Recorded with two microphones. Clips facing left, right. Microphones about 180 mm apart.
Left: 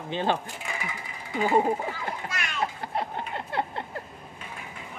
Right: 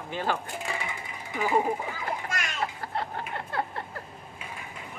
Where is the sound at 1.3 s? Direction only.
25° left (ahead or behind).